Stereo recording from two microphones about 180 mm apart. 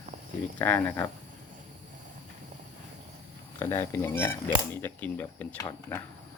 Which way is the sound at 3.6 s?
15° left (ahead or behind).